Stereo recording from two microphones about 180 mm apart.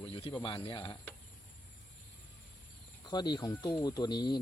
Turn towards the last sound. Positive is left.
turn(degrees=25)  # may be behind; listen again after turning